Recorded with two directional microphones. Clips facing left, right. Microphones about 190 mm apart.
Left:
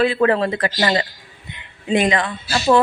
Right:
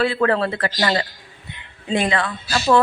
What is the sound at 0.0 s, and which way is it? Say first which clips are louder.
Speech: left 2 dB; 15° left (ahead or behind).